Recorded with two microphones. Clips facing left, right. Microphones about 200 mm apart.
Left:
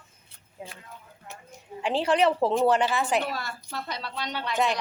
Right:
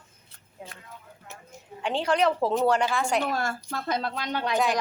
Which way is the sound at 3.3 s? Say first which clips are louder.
Right 5 dB; 50° right (ahead or behind).